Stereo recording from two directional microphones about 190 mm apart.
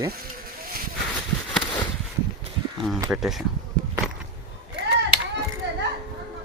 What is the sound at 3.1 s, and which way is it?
Speech, centre (ahead or behind).